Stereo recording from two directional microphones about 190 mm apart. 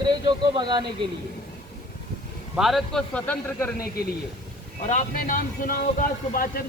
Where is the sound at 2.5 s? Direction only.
Centre (ahead or behind).